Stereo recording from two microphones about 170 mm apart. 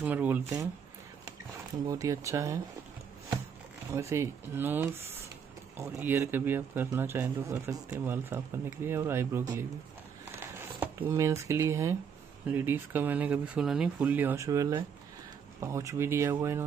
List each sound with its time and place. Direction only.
0.0 s speech: 10° right (ahead or behind)
1.9 s speech: 20° right (ahead or behind)
3.9 s speech: 15° right (ahead or behind)
10.4 s a sound: 15° right (ahead or behind)
11.1 s speech: 15° right (ahead or behind)